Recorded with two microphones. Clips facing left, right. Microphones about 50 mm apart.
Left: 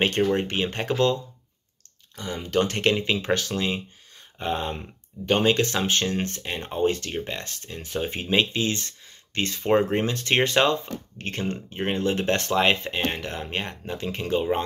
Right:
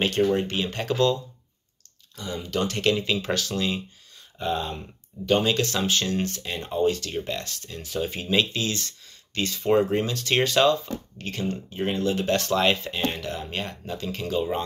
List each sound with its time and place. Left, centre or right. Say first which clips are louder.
0.0 s speech: even; left
9.4 s speech: even; left